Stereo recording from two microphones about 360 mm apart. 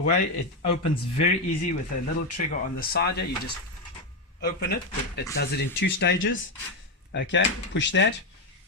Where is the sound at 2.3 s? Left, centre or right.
Left.